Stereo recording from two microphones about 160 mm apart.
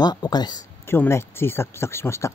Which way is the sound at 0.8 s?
15° left (ahead or behind).